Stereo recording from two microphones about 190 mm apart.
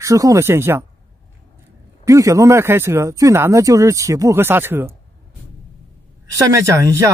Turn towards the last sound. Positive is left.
turn(degrees=-15)  # may be behind; listen again after turning